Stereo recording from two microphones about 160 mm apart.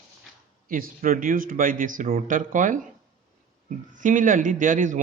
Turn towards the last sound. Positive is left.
turn(degrees=-55)  # may be behind; listen again after turning